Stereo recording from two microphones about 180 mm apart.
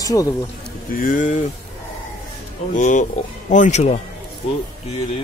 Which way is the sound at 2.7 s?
45° left (ahead or behind).